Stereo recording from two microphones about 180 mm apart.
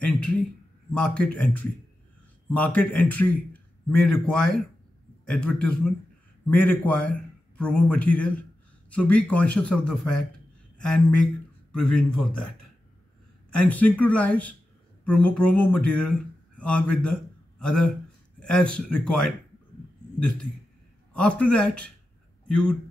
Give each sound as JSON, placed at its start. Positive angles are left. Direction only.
{"t": 0.0, "sound": "a sound", "side_deg": 5}
{"t": 0.9, "sound": "a man's voice", "side_deg": 5}
{"t": 11.7, "sound": "speech", "side_deg": 5}
{"t": 13.6, "sound": "a man's voice", "side_deg": 10}
{"t": 21.1, "sound": "a man's voice", "side_deg": 5}